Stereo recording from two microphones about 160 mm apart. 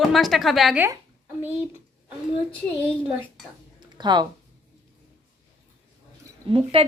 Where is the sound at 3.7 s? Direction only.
25° right (ahead or behind).